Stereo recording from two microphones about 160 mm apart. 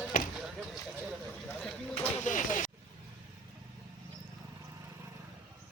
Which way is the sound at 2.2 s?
50° left (ahead or behind).